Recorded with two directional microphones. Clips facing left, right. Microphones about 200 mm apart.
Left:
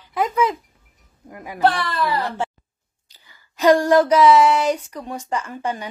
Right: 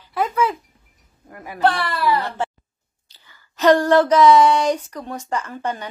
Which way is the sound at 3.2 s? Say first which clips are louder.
Even; 15° left (ahead or behind).